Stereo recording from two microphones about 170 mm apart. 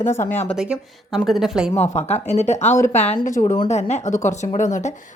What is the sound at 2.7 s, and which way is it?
Speech, 15° left (ahead or behind).